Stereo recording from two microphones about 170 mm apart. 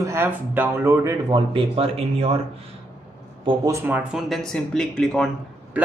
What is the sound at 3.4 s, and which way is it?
Speech, 20° right (ahead or behind).